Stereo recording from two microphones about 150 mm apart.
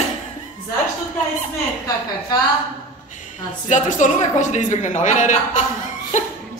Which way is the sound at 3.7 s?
55° left (ahead or behind).